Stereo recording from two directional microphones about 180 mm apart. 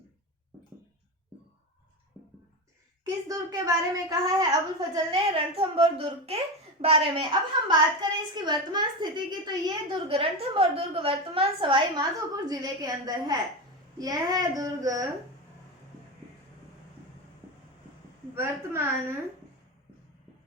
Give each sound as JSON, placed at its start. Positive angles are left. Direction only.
{"t": 3.0, "sound": "a woman's voice", "side_deg": -20}
{"t": 4.9, "sound": "a woman's voice", "side_deg": -30}
{"t": 18.3, "sound": "a woman's voice", "side_deg": -15}